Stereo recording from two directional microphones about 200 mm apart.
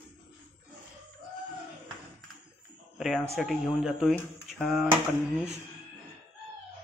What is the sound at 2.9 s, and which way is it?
Speech, centre (ahead or behind).